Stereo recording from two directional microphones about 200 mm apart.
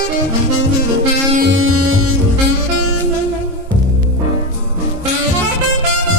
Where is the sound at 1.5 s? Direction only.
90° right.